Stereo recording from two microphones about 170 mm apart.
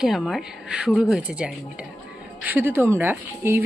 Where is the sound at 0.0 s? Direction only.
Centre (ahead or behind).